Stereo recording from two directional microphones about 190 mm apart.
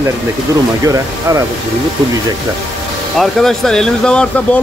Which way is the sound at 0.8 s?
20° right (ahead or behind).